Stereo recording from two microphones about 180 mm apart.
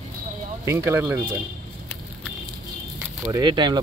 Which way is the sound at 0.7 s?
15° right (ahead or behind).